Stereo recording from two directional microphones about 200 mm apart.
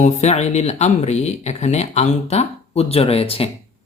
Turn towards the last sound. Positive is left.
turn(degrees=30)  # may be behind; listen again after turning